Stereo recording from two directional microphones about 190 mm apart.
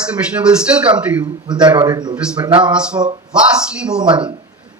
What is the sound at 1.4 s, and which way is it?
A man's voice, 25° right (ahead or behind).